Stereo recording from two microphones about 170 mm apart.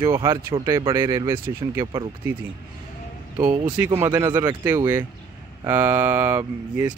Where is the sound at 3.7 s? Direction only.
15° right (ahead or behind).